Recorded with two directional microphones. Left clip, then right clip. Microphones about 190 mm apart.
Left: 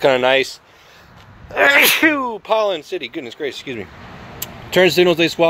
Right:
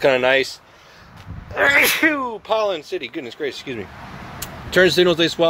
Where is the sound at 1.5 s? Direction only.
50° left (ahead or behind).